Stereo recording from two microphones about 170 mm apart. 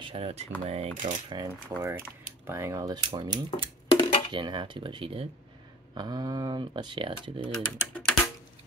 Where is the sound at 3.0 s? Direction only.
30° right (ahead or behind).